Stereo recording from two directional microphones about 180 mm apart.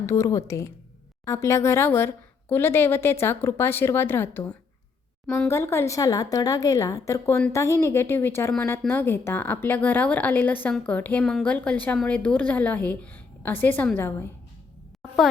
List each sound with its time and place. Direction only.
0.0 s a woman's voice: 15° left (ahead or behind)